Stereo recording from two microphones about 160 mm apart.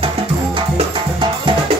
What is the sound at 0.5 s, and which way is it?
Music, 35° right (ahead or behind).